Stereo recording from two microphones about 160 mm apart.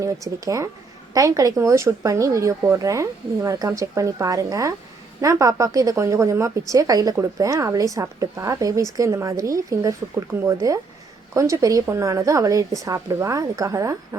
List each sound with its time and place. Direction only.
0.0 s speech: 20° right (ahead or behind)